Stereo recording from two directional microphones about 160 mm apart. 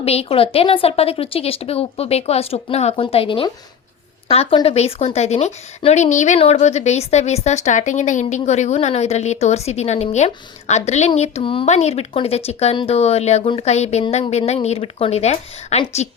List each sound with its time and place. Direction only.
0.0 s a woman's voice: 40° left (ahead or behind)
13.4 s a woman's voice: 30° left (ahead or behind)
13.7 s a woman's voice: 45° left (ahead or behind)